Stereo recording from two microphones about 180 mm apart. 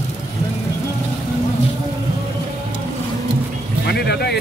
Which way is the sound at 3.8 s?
65° left (ahead or behind).